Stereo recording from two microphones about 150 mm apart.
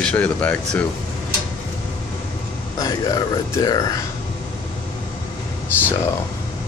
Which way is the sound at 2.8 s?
25° left (ahead or behind).